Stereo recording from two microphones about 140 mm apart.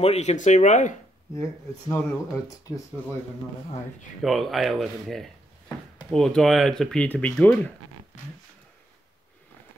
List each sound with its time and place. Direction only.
0.0 s speech: 50° left (ahead or behind)
1.3 s speech: 25° left (ahead or behind)
4.2 s speech: centre (ahead or behind)